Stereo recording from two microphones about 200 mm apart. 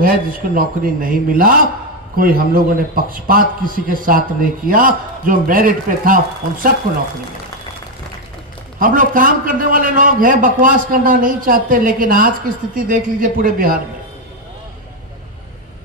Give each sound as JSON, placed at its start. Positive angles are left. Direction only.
{"t": 0.0, "sound": "a man's voice", "side_deg": -45}
{"t": 8.7, "sound": "a man's voice", "side_deg": -45}